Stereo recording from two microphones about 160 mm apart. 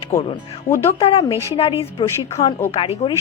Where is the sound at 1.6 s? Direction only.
40° left (ahead or behind).